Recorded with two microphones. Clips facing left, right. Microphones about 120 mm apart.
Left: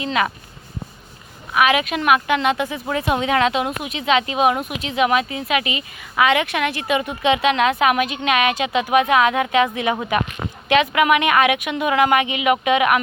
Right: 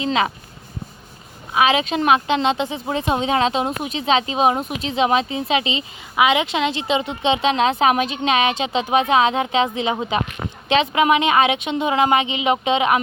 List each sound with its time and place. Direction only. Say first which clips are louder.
0.0 s speech: right 1 dB; 25° right (ahead or behind)
1.5 s speech: even; 25° right (ahead or behind)